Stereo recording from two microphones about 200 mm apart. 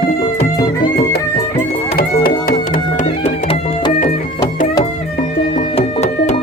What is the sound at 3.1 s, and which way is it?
Music, 30° left (ahead or behind).